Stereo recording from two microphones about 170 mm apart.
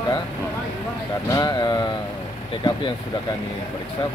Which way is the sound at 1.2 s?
20° left (ahead or behind).